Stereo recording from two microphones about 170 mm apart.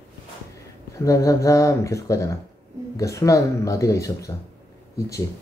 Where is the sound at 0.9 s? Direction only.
20° left (ahead or behind).